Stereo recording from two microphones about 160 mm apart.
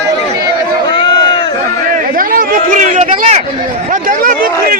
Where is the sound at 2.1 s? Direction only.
60° right (ahead or behind).